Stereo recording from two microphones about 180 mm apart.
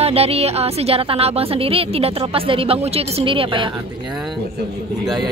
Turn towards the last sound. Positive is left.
turn(degrees=-25)  # may be behind; listen again after turning